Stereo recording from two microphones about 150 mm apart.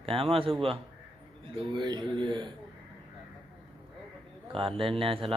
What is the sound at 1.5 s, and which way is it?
Speech, 30° right (ahead or behind).